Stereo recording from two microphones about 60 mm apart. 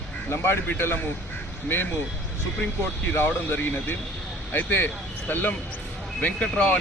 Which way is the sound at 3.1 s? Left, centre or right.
Left.